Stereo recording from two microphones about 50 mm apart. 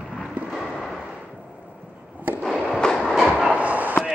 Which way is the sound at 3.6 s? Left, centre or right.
Right.